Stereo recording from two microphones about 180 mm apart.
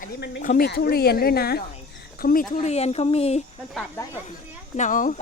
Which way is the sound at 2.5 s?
35° left (ahead or behind).